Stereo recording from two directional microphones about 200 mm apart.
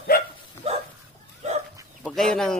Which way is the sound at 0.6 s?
30° right (ahead or behind).